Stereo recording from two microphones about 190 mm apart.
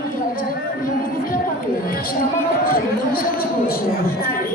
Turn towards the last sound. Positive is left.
turn(degrees=50)  # may be behind; listen again after turning